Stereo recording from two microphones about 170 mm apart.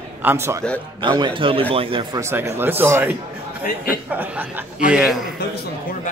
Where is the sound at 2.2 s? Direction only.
15° right (ahead or behind).